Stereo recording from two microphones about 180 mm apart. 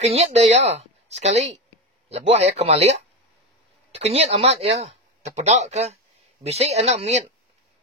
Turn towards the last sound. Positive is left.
turn(degrees=-35)  # may be behind; listen again after turning